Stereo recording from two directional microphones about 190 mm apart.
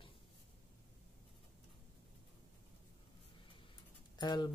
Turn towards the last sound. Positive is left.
turn(degrees=20)  # may be behind; listen again after turning